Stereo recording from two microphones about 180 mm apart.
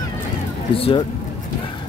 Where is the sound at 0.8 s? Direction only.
30° left (ahead or behind).